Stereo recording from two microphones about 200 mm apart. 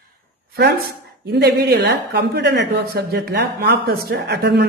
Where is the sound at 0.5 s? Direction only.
55° right (ahead or behind).